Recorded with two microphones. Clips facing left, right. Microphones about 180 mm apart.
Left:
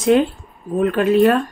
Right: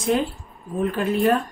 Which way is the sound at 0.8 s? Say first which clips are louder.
Left 7 dB; 80° left.